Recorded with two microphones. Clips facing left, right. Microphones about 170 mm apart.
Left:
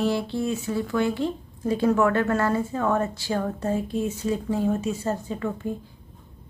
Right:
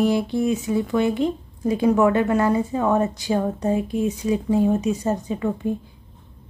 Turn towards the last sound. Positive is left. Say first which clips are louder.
# right 4 dB
turn(degrees=-15)  # may be behind; listen again after turning